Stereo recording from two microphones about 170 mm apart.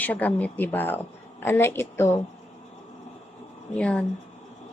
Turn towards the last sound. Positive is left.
turn(degrees=5)  # may be behind; listen again after turning